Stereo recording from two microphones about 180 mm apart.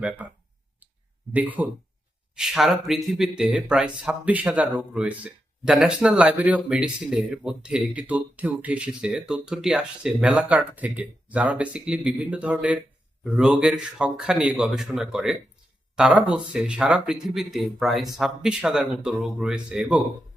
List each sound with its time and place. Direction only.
1.3 s speech: 10° right (ahead or behind)